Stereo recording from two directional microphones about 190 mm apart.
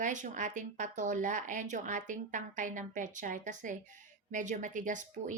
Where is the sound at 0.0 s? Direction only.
40° right (ahead or behind).